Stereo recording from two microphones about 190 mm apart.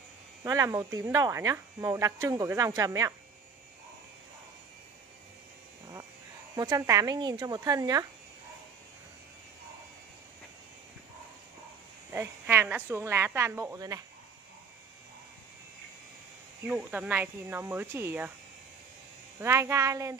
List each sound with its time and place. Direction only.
0.4 s speech: 15° right (ahead or behind)
6.5 s speech: 20° right (ahead or behind)
12.1 s speech: 10° right (ahead or behind)
16.6 s speech: 5° right (ahead or behind)
19.4 s speech: 15° right (ahead or behind)